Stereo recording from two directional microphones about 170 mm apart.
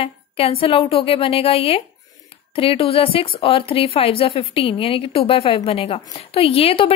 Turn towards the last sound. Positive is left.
turn(degrees=35)  # may be behind; listen again after turning